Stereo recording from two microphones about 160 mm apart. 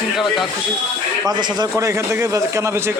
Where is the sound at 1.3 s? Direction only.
25° right (ahead or behind).